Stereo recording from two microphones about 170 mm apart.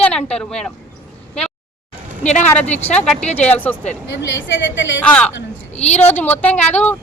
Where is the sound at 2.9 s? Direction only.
5° left (ahead or behind).